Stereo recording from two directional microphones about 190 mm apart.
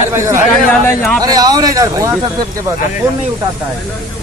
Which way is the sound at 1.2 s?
20° right (ahead or behind).